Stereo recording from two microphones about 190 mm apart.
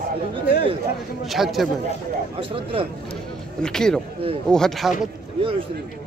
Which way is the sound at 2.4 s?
30° right (ahead or behind).